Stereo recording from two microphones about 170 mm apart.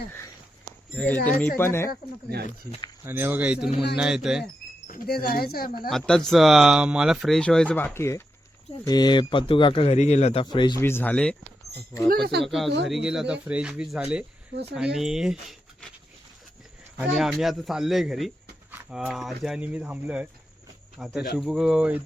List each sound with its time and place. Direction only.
0.9 s speech: 10° left (ahead or behind)
3.0 s speech: 10° right (ahead or behind)
4.9 s speech: 65° left (ahead or behind)
5.9 s a man's voice: centre (ahead or behind); by 10.4 s 40° left (ahead or behind)
10.4 s speech: 25° left (ahead or behind)
10.8 s speech: 15° left (ahead or behind)
12.4 s speech: centre (ahead or behind)
14.5 s speech: 75° right (ahead or behind)
14.8 s speech: 5° right (ahead or behind)
17.0 s speech: centre (ahead or behind)